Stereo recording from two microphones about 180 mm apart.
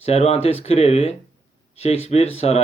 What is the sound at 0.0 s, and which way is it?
Speech, 35° left (ahead or behind).